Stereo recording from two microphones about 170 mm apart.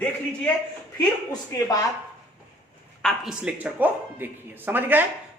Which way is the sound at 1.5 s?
20° left (ahead or behind).